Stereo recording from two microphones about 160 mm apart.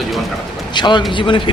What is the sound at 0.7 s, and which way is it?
Speech, 30° left (ahead or behind).